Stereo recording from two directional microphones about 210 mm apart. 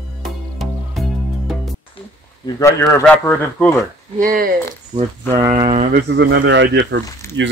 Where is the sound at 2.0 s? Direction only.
25° left (ahead or behind).